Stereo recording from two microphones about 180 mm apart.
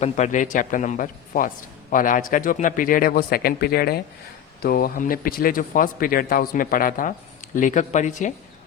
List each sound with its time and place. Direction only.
0.0 s a man's voice: 40° left (ahead or behind)